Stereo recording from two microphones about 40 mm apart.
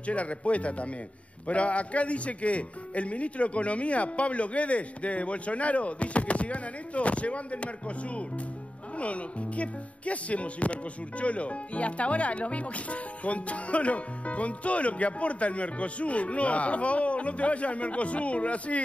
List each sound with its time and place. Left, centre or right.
0.0 s speech: left